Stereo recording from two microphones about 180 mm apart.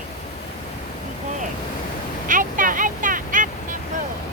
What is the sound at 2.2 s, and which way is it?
Quack, 45° right (ahead or behind).